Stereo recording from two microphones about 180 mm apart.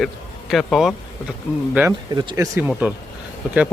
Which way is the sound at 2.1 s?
25° right (ahead or behind).